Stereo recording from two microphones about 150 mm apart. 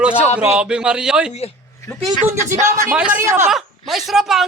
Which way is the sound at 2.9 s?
5° right (ahead or behind).